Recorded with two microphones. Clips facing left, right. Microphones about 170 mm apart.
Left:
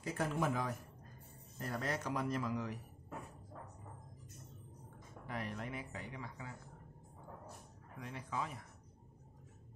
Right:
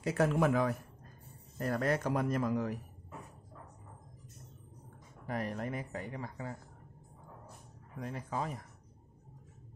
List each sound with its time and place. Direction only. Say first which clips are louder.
0.0 s speech: right 8 dB; 75° right (ahead or behind); by 2.8 s 50° right (ahead or behind)
5.2 s speech: right 6 dB; 45° right (ahead or behind)
8.0 s speech: right 5 dB; 40° right (ahead or behind)